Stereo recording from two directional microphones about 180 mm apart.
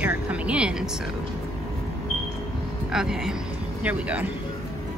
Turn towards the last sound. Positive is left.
turn(degrees=-5)  # may be behind; listen again after turning